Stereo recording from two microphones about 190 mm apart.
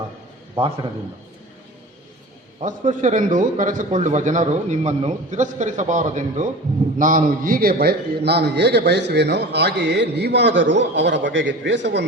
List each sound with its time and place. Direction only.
2.6 s a man's voice: 40° right (ahead or behind); by 12.0 s 65° right (ahead or behind)